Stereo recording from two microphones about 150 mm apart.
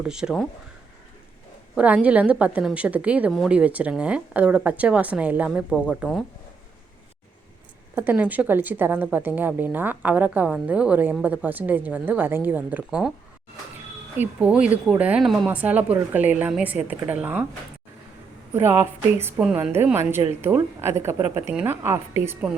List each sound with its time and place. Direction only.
0.0 s speech: 5° right (ahead or behind)
1.7 s a woman's voice: 10° right (ahead or behind)
7.9 s a woman's voice: 10° right (ahead or behind)
14.2 s a woman's voice: 10° right (ahead or behind)
15.4 s a woman's voice: 10° right (ahead or behind)
18.5 s a woman's voice: 15° right (ahead or behind)